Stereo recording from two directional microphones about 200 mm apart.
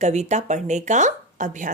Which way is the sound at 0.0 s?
35° right (ahead or behind).